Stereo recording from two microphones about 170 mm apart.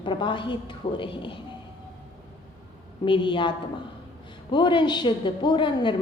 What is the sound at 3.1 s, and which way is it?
Speech, 30° left (ahead or behind).